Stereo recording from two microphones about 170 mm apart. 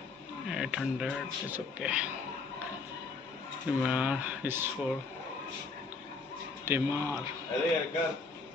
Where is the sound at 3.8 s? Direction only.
5° right (ahead or behind).